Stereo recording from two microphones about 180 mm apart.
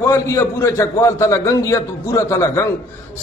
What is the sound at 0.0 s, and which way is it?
A man's voice, 15° left (ahead or behind).